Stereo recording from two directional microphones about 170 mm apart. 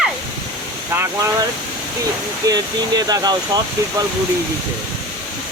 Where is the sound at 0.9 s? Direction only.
15° right (ahead or behind).